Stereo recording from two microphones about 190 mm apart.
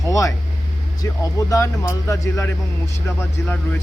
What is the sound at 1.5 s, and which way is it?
Speech, 15° left (ahead or behind).